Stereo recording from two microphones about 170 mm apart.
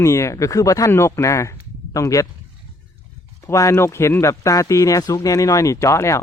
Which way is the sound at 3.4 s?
15° left (ahead or behind).